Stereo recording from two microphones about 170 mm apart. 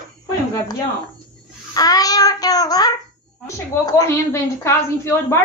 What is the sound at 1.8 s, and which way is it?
Child singing, 20° left (ahead or behind).